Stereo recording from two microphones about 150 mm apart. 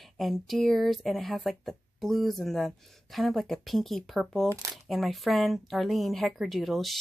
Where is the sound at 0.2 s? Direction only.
Centre (ahead or behind).